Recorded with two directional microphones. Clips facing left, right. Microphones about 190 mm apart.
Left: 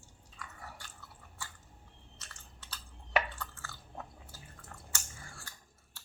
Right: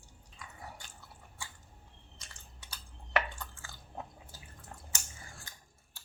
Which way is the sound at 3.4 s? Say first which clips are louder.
Left 2 dB; 15° right (ahead or behind).